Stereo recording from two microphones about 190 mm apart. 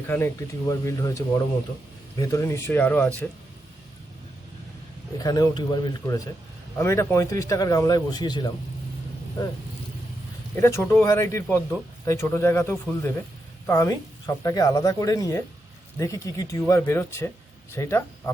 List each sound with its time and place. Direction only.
0.7 s speech: 15° left (ahead or behind)
5.2 s a man's voice: 20° left (ahead or behind)
10.5 s speech: 15° left (ahead or behind)